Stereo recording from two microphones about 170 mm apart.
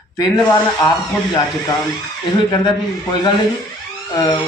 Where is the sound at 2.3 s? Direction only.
25° left (ahead or behind).